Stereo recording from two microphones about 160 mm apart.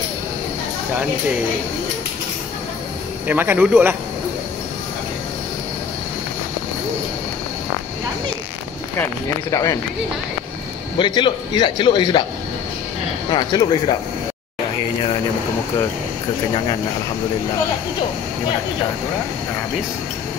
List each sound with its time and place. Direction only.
3.3 s speech: 10° right (ahead or behind)
9.5 s a man's voice: 20° left (ahead or behind)
11.0 s a man's voice: 30° left (ahead or behind)
13.3 s a man's voice: 30° left (ahead or behind)